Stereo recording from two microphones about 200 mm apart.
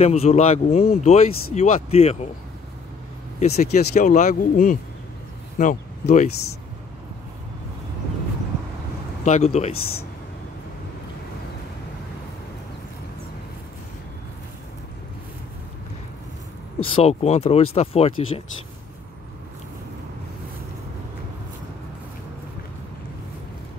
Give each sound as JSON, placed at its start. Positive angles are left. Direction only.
{"t": 0.0, "sound": "speech", "side_deg": 30}
{"t": 3.3, "sound": "speech", "side_deg": 35}
{"t": 9.2, "sound": "speech", "side_deg": 35}
{"t": 16.8, "sound": "speech", "side_deg": 30}